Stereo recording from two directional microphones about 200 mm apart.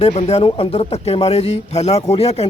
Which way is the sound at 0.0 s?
30° left (ahead or behind).